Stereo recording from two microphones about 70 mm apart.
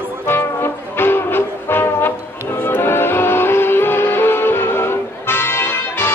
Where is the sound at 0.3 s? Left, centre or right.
Left.